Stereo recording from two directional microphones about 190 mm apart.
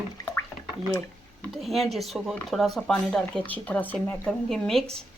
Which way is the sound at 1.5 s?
Centre (ahead or behind).